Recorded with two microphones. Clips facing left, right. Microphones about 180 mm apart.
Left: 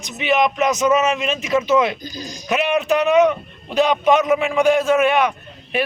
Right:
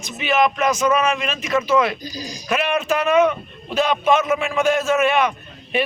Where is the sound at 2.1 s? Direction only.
35° right (ahead or behind).